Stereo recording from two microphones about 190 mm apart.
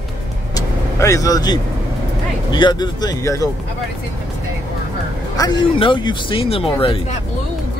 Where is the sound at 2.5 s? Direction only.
25° left (ahead or behind).